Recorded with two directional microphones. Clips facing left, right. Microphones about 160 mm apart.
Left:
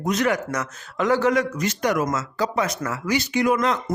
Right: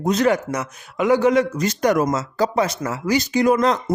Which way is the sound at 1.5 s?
40° right (ahead or behind).